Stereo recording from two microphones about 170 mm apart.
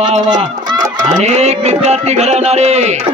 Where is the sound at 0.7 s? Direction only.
25° right (ahead or behind).